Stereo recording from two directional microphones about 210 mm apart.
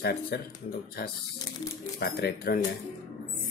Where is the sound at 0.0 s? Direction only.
45° left (ahead or behind).